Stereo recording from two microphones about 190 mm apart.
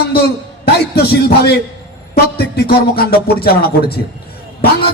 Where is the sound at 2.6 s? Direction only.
55° left (ahead or behind).